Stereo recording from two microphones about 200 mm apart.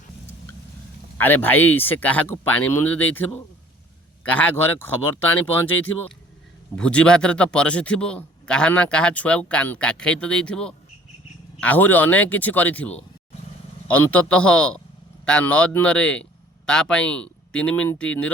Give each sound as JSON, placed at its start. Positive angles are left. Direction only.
{"t": 1.2, "sound": "a man's voice", "side_deg": 10}